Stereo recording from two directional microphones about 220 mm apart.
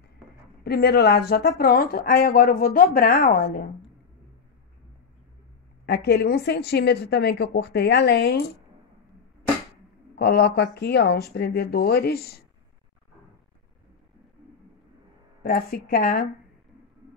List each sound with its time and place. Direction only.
0.7 s speech: 45° left (ahead or behind)
5.9 s a woman's voice: 50° left (ahead or behind)
10.1 s a woman's voice: 45° left (ahead or behind)
15.4 s speech: 40° left (ahead or behind)